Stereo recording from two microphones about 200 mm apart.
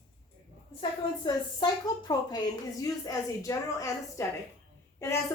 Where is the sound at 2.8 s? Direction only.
15° left (ahead or behind).